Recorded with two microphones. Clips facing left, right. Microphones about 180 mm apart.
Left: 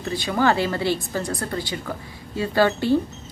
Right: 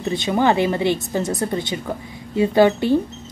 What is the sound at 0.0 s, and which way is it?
Speech, 20° right (ahead or behind).